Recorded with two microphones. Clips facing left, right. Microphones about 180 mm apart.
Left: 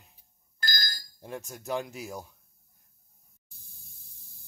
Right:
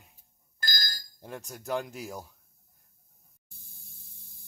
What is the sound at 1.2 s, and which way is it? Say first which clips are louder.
Speech: left 1 dB; centre (ahead or behind).